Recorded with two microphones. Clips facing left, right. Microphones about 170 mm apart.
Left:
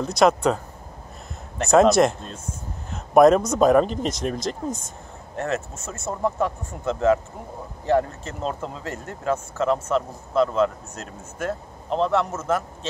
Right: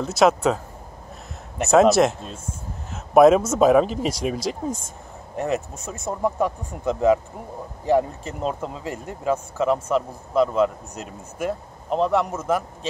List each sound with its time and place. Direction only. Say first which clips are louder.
0.0 s speech: even; 5° right (ahead or behind)
1.6 s speech: even; 5° right (ahead or behind)